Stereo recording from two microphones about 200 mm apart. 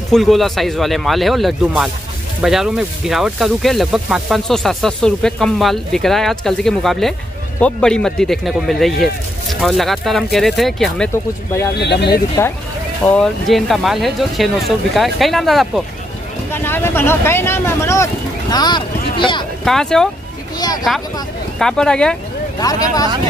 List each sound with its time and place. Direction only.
0.1 s speech: centre (ahead or behind)
11.7 s speech: 55° left (ahead or behind)
13.0 s speech: 5° left (ahead or behind)
16.6 s speech: 10° left (ahead or behind)
19.6 s speech: 5° left (ahead or behind)
20.5 s a sound: 20° left (ahead or behind)
21.5 s speech: 5° left (ahead or behind)
22.6 s speech: 20° left (ahead or behind)